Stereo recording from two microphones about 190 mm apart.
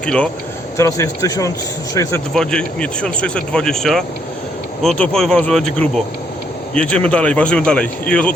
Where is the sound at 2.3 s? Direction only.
5° left (ahead or behind).